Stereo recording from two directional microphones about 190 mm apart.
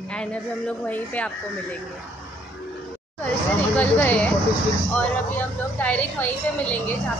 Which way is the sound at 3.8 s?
10° left (ahead or behind).